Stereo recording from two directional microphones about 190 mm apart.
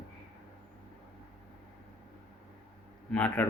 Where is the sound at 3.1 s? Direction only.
5° left (ahead or behind).